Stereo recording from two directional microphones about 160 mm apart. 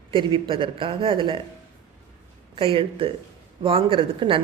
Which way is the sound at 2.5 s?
35° right (ahead or behind).